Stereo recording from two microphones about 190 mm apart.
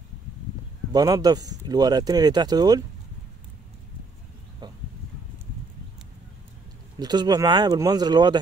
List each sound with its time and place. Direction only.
0.9 s speech: 20° right (ahead or behind)
7.0 s speech: 20° right (ahead or behind)